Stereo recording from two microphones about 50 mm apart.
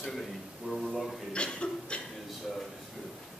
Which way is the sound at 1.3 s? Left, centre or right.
Left.